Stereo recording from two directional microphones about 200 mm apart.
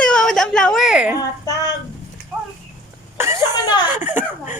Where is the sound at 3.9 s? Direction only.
10° right (ahead or behind).